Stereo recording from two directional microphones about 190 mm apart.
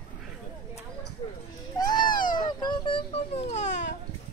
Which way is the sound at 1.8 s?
25° left (ahead or behind).